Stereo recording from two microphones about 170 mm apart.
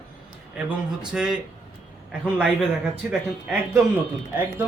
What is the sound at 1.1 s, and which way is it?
Speech, 5° right (ahead or behind).